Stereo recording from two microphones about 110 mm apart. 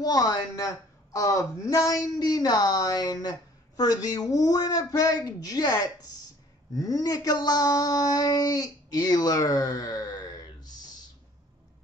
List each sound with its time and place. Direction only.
0.0 s a woman's voice: 35° left (ahead or behind)